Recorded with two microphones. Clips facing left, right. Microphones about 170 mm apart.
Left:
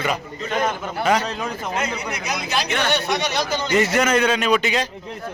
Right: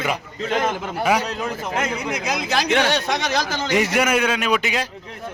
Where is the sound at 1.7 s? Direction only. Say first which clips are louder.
Right 2 dB; 90° right.